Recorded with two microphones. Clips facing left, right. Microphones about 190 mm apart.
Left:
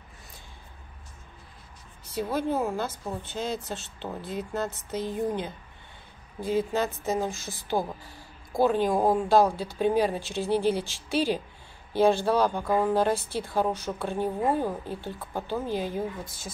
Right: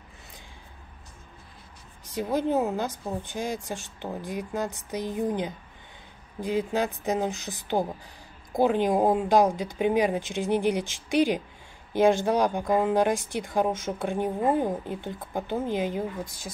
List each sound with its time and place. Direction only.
2.0 s a woman's voice: 15° right (ahead or behind)